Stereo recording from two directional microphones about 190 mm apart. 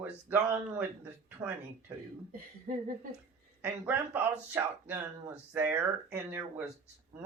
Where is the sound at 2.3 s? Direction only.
45° right (ahead or behind).